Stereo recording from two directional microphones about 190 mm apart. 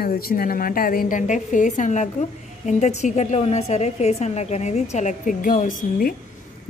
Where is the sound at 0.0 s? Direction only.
50° left (ahead or behind).